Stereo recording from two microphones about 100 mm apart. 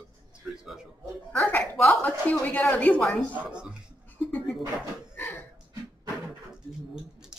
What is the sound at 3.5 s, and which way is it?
Speech, 10° right (ahead or behind).